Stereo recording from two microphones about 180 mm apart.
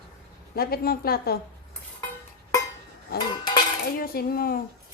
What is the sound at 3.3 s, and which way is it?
Cutlery, 25° left (ahead or behind).